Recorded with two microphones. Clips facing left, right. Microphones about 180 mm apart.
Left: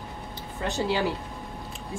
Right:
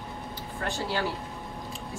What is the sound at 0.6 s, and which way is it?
Speech, 20° left (ahead or behind).